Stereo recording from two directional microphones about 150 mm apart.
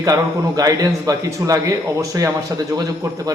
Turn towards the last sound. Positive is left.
turn(degrees=-25)  # may be behind; listen again after turning